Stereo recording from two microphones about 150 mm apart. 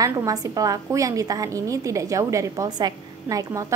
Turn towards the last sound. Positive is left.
turn(degrees=-20)  # may be behind; listen again after turning